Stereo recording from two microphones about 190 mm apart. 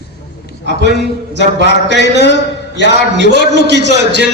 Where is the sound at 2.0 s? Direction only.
65° left (ahead or behind).